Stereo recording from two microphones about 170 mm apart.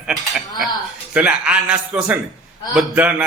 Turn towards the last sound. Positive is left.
turn(degrees=-5)  # may be behind; listen again after turning